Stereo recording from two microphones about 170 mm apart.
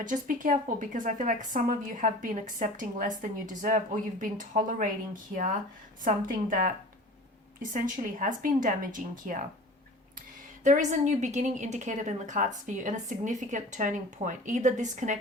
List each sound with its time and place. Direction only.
0.0 s a woman's voice: 50° right (ahead or behind)
6.1 s a woman's voice: 50° right (ahead or behind)
10.6 s a woman's voice: 45° right (ahead or behind)